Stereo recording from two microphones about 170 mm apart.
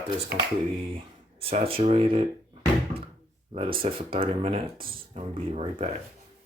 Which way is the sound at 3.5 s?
35° right (ahead or behind).